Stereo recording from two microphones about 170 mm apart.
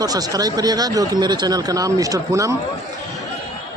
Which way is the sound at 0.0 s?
20° right (ahead or behind).